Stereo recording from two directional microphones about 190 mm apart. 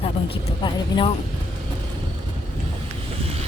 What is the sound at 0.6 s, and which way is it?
Speech, 25° left (ahead or behind).